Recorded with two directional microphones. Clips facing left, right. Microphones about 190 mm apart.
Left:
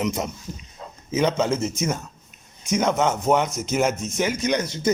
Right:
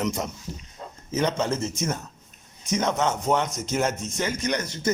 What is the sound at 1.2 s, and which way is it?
Speech, 10° left (ahead or behind).